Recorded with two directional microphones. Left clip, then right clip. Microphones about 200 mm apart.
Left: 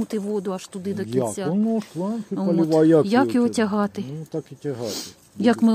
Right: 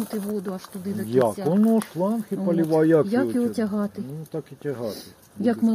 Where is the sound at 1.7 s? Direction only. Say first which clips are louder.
Right 3 dB; 60° left (ahead or behind).